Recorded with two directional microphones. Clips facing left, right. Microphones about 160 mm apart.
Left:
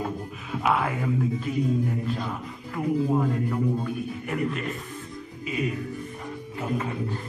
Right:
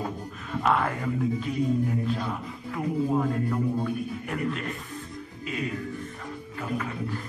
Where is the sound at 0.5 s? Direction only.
5° left (ahead or behind).